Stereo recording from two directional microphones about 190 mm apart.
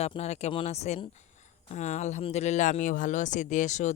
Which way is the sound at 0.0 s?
35° left (ahead or behind).